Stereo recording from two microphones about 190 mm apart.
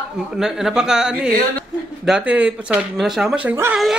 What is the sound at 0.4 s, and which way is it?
Speech, 5° right (ahead or behind).